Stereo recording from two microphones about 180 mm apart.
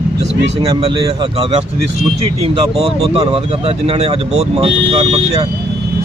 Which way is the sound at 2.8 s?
35° right (ahead or behind).